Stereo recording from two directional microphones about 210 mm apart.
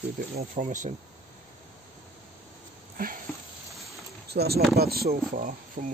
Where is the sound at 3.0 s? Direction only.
45° right (ahead or behind).